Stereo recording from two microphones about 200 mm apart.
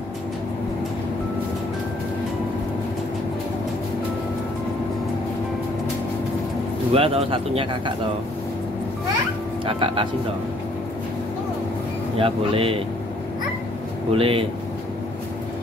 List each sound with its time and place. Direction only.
6.9 s speech: 30° right (ahead or behind)
9.7 s speech: 25° right (ahead or behind)
12.2 s speech: 25° right (ahead or behind)
14.1 s speech: 25° right (ahead or behind)